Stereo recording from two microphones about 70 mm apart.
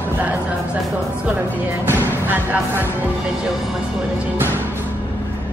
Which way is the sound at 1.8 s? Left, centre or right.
Right.